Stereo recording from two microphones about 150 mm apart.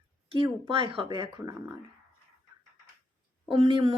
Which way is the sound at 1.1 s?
25° right (ahead or behind).